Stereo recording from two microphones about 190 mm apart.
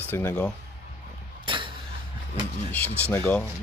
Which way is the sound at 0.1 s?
10° left (ahead or behind).